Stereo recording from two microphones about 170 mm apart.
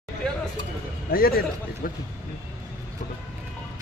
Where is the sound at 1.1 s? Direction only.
60° left (ahead or behind).